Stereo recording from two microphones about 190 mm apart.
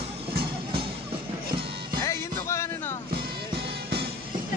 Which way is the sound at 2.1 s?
15° left (ahead or behind).